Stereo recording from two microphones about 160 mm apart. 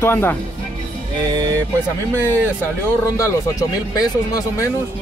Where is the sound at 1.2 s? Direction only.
25° right (ahead or behind).